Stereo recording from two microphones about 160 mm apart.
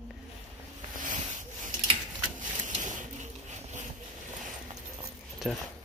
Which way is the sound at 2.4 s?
50° right (ahead or behind).